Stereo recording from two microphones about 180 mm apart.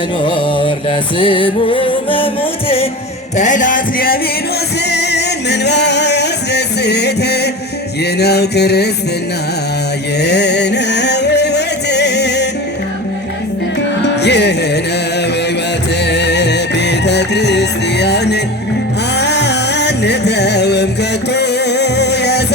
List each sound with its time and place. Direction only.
0.3 s music: 25° left (ahead or behind)
3.3 s music: 45° left (ahead or behind)
4.9 s music: 70° left (ahead or behind)
8.2 s mantra: 65° left (ahead or behind)
10.2 s music: 70° left (ahead or behind)
14.2 s music: 70° left (ahead or behind)
16.0 s music: 70° left (ahead or behind)